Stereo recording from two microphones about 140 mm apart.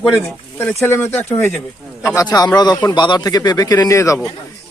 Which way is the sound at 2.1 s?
30° left (ahead or behind).